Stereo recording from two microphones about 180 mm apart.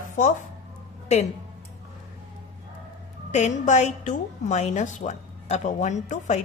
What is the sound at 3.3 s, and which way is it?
A woman's voice, 40° left (ahead or behind).